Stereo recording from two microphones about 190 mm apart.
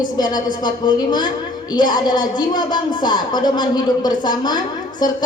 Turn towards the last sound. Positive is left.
turn(degrees=20)  # may be behind; listen again after turning